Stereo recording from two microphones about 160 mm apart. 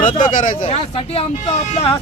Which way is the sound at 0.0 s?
55° left (ahead or behind).